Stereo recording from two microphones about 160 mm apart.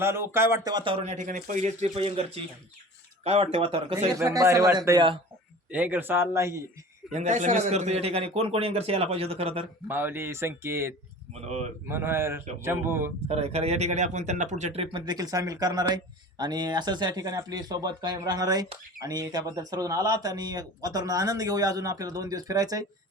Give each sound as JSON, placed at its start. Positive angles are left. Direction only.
{"t": 0.0, "sound": "a man's voice", "side_deg": -15}
{"t": 1.0, "sound": "speech", "side_deg": -50}
{"t": 4.2, "sound": "speech", "side_deg": -20}
{"t": 5.7, "sound": "a man's voice", "side_deg": -10}
{"t": 7.1, "sound": "speech", "side_deg": -45}
{"t": 9.9, "sound": "a man's voice", "side_deg": -15}
{"t": 11.3, "sound": "speech", "side_deg": -45}
{"t": 11.9, "sound": "a man's voice", "side_deg": -15}
{"t": 13.2, "sound": "speech", "side_deg": -40}